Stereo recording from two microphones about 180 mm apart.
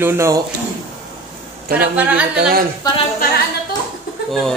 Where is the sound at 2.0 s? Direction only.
10° right (ahead or behind).